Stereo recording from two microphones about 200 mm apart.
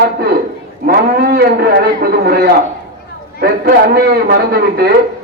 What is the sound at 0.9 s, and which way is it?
A man's voice, 50° right (ahead or behind).